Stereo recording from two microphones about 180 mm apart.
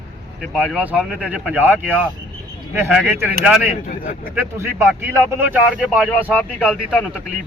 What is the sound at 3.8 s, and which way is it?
Speech, 50° left (ahead or behind).